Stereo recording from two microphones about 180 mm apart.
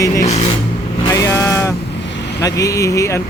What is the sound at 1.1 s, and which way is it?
Vehicle, 15° left (ahead or behind).